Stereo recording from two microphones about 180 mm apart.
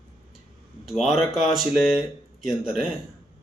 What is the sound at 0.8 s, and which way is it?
Speech, centre (ahead or behind).